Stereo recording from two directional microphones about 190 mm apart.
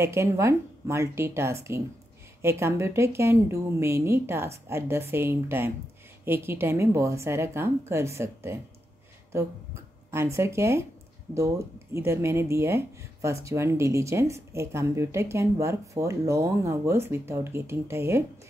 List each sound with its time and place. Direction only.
0.0 s speech: 15° right (ahead or behind)
10.1 s speech: 15° right (ahead or behind)